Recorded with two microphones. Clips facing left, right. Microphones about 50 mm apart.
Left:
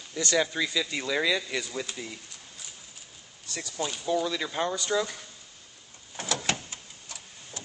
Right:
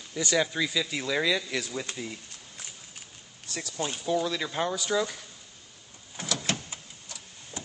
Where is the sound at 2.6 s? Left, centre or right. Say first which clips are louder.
Right 1 dB; right.